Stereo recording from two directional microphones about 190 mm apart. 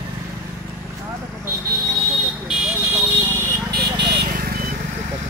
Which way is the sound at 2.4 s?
5° right (ahead or behind).